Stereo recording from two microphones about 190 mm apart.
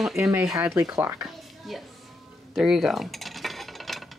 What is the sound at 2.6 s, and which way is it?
Cutlery, centre (ahead or behind).